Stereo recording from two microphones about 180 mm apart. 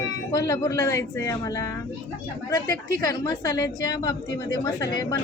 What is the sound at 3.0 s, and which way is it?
A woman's voice, 20° left (ahead or behind).